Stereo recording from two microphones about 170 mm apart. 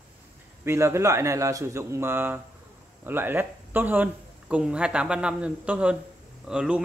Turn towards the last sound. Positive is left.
turn(degrees=-5)  # may be behind; listen again after turning